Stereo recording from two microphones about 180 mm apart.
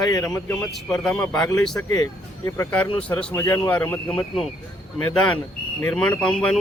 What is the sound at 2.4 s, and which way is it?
Speech, 15° left (ahead or behind).